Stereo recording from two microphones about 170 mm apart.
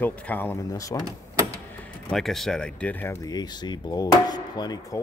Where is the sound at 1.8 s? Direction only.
5° left (ahead or behind).